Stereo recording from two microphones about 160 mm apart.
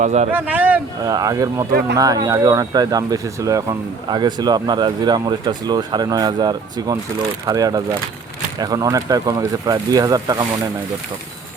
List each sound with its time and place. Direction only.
0.0 s speech: 45° right (ahead or behind)
0.3 s speech: 10° right (ahead or behind)
1.0 s speech: 25° right (ahead or behind)